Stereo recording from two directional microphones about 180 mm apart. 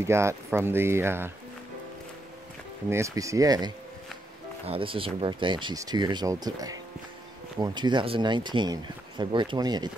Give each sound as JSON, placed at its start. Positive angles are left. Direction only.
{"t": 0.0, "sound": "speech", "side_deg": -15}
{"t": 2.9, "sound": "speech", "side_deg": -15}